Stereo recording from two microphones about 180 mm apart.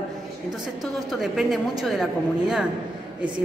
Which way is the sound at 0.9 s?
Centre (ahead or behind).